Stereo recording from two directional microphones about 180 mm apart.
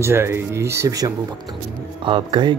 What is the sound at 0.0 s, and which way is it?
Speech, 15° right (ahead or behind).